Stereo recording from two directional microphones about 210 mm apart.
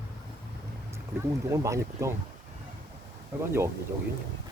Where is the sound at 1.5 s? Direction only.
15° right (ahead or behind).